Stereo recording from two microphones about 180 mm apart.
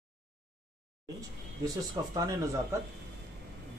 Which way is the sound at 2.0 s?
20° right (ahead or behind).